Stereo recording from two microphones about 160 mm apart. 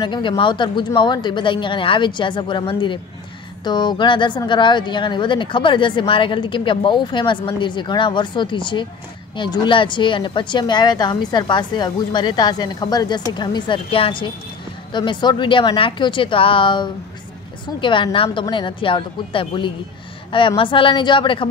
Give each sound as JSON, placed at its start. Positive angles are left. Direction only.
{"t": 0.0, "sound": "speech", "side_deg": 30}